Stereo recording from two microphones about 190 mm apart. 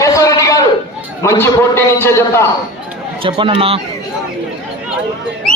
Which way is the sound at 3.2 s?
25° right (ahead or behind).